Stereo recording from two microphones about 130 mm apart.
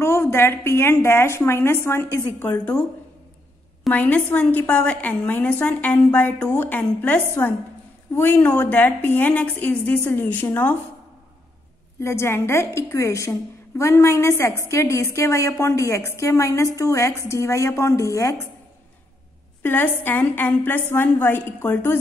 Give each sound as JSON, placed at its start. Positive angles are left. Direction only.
{"t": 0.0, "sound": "a woman's voice", "side_deg": 20}
{"t": 3.9, "sound": "a woman's voice", "side_deg": 10}
{"t": 12.0, "sound": "a woman's voice", "side_deg": 20}
{"t": 19.6, "sound": "a woman's voice", "side_deg": 15}